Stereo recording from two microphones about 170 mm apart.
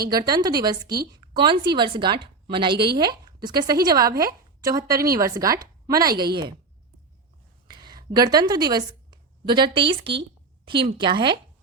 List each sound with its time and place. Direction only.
0.1 s a woman's voice: 25° right (ahead or behind)
4.1 s a woman's voice: 60° right (ahead or behind)
4.6 s speech: 20° right (ahead or behind)
7.7 s a woman's voice: 25° right (ahead or behind)